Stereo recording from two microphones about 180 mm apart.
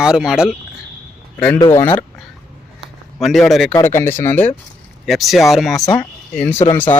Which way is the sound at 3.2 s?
Centre (ahead or behind).